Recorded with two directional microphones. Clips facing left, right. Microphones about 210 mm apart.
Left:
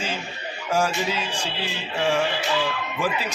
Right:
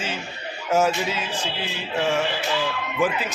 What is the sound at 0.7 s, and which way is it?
Speech, 5° right (ahead or behind).